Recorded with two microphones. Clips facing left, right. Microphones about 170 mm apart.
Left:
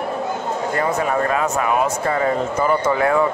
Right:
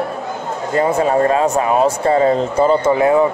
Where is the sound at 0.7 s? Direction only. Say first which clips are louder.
Right 7 dB; 30° right (ahead or behind).